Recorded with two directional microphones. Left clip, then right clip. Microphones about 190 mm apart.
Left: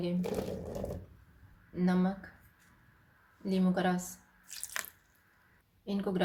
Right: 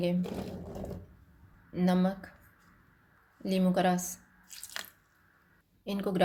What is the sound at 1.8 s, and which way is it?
Speech, 40° right (ahead or behind).